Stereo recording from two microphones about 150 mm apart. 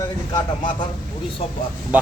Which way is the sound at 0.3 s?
30° left (ahead or behind).